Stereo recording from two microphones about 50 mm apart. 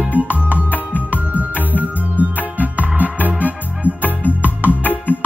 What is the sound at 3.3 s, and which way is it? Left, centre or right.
Keyboard, right.